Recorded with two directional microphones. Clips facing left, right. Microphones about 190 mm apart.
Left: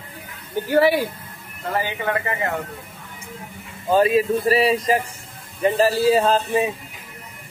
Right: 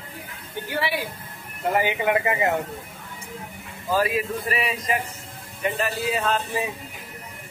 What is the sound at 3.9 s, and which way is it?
Speech, 25° left (ahead or behind).